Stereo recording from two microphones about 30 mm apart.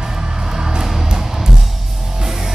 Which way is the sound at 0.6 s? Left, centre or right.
Right.